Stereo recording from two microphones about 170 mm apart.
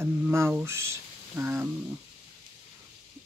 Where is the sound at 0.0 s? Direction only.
15° right (ahead or behind).